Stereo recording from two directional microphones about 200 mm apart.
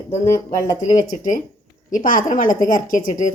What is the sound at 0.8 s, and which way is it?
Speech, 40° left (ahead or behind).